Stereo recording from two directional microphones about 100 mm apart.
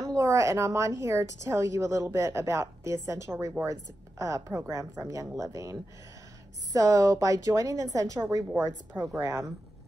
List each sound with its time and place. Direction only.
0.0 s a woman's voice: 35° right (ahead or behind)
8.5 s speech: 15° right (ahead or behind)
9.2 s a woman's voice: 30° right (ahead or behind)